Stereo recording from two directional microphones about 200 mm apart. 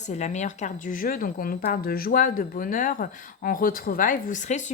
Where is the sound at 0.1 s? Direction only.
35° left (ahead or behind).